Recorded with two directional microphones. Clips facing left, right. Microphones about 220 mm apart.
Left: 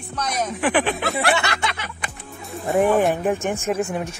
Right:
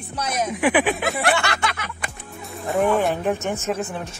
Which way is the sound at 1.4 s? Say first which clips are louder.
Right 1 dB; 25° left (ahead or behind).